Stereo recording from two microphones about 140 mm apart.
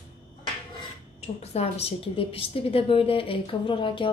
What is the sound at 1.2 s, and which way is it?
A woman's voice, 50° left (ahead or behind).